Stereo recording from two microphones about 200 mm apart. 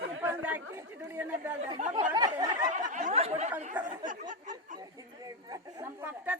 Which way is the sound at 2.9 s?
35° right (ahead or behind).